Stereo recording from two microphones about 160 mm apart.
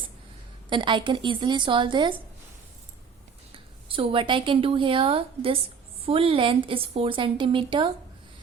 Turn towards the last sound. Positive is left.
turn(degrees=-30)  # may be behind; listen again after turning